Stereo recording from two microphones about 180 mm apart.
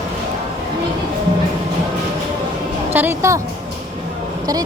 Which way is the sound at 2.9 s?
10° right (ahead or behind).